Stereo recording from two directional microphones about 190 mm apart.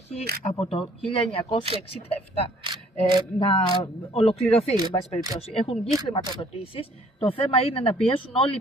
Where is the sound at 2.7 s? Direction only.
25° right (ahead or behind).